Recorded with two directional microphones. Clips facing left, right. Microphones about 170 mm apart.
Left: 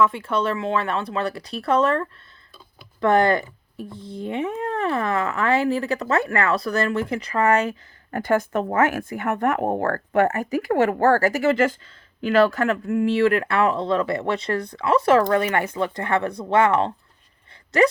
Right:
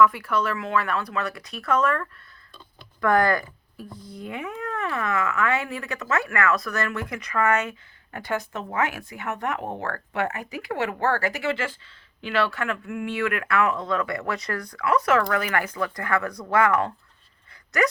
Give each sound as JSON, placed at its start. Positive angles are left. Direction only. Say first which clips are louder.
{"t": 0.0, "sound": "speech", "louder": "even", "side_deg": 25}